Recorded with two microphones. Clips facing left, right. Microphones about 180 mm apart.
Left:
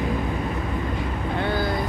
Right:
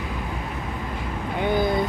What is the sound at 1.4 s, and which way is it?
Vehicle, 20° right (ahead or behind).